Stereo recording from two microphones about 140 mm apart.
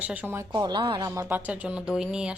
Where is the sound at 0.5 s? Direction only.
30° right (ahead or behind).